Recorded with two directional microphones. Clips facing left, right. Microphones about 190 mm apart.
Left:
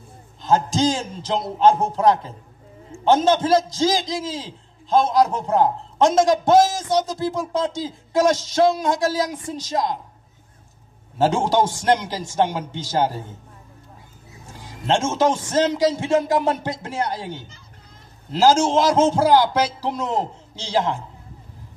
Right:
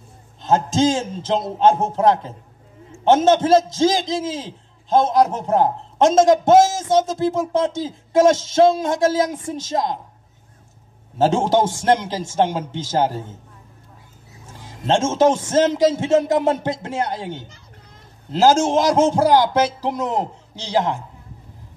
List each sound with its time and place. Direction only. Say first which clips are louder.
0.4 s a man's voice: right 2 dB; 20° right (ahead or behind)
11.1 s a man's voice: right 2 dB; 20° right (ahead or behind)
14.9 s a man's voice: right 3 dB; 20° right (ahead or behind)